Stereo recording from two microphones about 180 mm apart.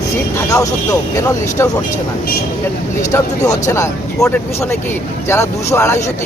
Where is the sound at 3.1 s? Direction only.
20° left (ahead or behind).